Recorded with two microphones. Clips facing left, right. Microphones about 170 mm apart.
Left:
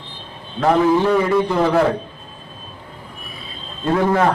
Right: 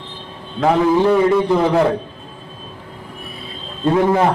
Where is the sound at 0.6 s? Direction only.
10° right (ahead or behind).